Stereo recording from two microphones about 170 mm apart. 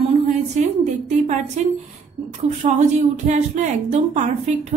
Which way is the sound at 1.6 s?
45° right (ahead or behind).